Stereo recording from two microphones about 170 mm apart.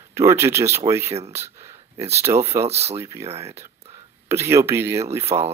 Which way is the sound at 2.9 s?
15° right (ahead or behind).